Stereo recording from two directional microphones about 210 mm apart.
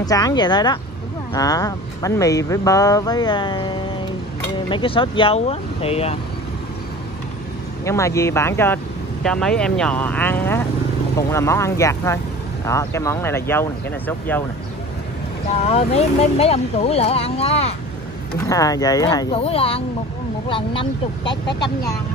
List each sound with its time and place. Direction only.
0.0 s speech: 15° left (ahead or behind)
7.8 s speech: 15° left (ahead or behind)
15.6 s speech: 30° left (ahead or behind)
18.5 s speech: 15° left (ahead or behind)
21.2 s speech: 55° left (ahead or behind)
21.5 s speech: 20° left (ahead or behind)